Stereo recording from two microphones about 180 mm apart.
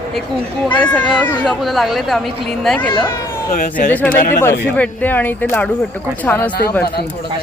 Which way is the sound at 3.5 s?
40° left (ahead or behind).